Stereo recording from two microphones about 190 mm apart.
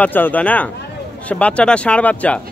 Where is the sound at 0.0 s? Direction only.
10° left (ahead or behind).